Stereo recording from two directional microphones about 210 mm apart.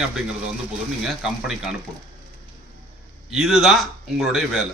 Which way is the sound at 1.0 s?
Centre (ahead or behind).